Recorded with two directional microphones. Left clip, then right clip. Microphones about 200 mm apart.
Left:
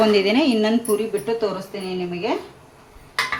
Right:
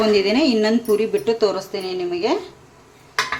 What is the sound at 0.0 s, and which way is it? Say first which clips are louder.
Speech: even; 5° left (ahead or behind).